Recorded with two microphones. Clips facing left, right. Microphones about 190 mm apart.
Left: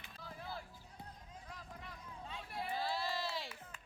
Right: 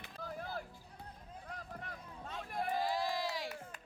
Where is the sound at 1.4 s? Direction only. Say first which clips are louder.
Right 5 dB; 55° right (ahead or behind).